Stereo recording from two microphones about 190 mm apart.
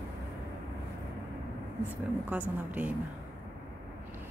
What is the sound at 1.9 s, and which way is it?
A woman's voice, 10° right (ahead or behind).